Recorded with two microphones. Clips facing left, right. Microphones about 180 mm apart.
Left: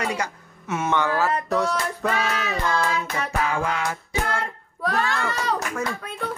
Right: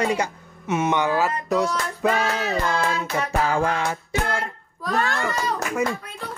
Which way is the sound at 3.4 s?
30° right (ahead or behind).